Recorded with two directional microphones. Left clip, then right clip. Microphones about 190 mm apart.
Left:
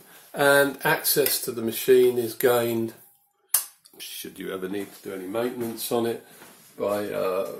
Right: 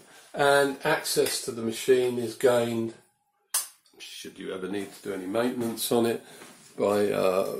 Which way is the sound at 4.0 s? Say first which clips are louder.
Left 3 dB; 40° left (ahead or behind).